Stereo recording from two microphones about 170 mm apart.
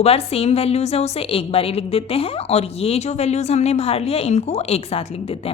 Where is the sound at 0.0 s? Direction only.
35° left (ahead or behind).